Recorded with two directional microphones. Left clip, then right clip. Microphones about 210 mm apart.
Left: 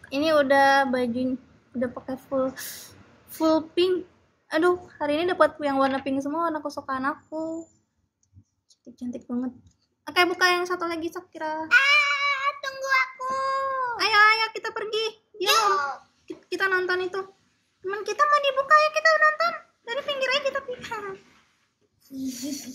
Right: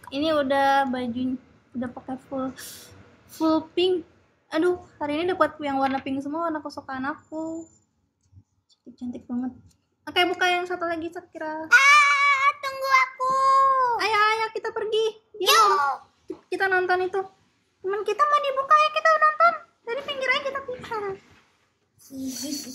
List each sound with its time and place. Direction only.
0.1 s a woman's voice: 20° left (ahead or behind)
8.6 s speech: 20° left (ahead or behind)
12.4 s child singing: 20° right (ahead or behind)
14.0 s a sound: 20° left (ahead or behind)
15.4 s a child's voice: 20° right (ahead or behind)
16.4 s a woman's voice: 25° left (ahead or behind)
18.7 s a sound: 25° left (ahead or behind)